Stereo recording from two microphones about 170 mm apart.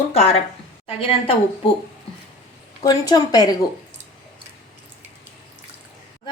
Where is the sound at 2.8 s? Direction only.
25° left (ahead or behind).